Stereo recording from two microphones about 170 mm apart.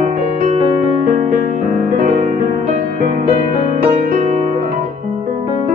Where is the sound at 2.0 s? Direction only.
40° right (ahead or behind).